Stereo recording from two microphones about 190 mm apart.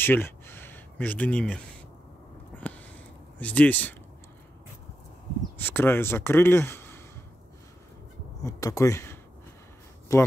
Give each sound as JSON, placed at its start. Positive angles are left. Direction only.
{"t": 0.0, "sound": "a sound", "side_deg": 10}
{"t": 2.5, "sound": "sniff", "side_deg": 5}
{"t": 3.3, "sound": "speech", "side_deg": 10}
{"t": 5.6, "sound": "speech", "side_deg": 10}
{"t": 8.4, "sound": "speech", "side_deg": 15}